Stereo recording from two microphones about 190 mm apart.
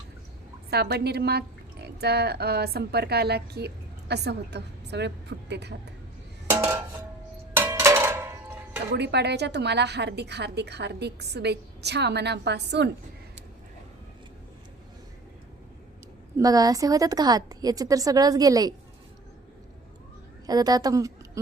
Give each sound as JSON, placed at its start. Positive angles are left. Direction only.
{"t": 0.7, "sound": "a woman's voice", "side_deg": -60}
{"t": 7.5, "sound": "music", "side_deg": -10}
{"t": 8.9, "sound": "a woman's voice", "side_deg": -60}
{"t": 16.4, "sound": "a woman's voice", "side_deg": -20}
{"t": 20.5, "sound": "a woman's voice", "side_deg": -20}